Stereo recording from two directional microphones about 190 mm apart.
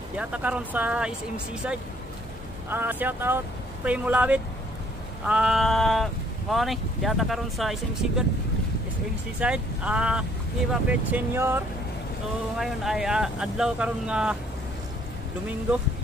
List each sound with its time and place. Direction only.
0.2 s speech: 5° right (ahead or behind)
9.4 s speech: 5° right (ahead or behind)